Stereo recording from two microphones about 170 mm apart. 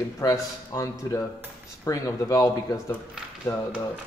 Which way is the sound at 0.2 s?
20° left (ahead or behind).